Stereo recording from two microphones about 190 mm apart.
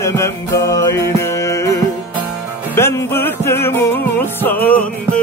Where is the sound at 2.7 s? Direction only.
15° left (ahead or behind).